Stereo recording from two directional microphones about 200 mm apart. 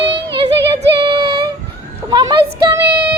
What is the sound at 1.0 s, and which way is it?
Child singing, 25° right (ahead or behind).